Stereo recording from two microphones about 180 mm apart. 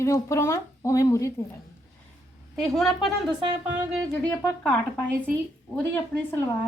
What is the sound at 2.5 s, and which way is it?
A woman's voice, centre (ahead or behind).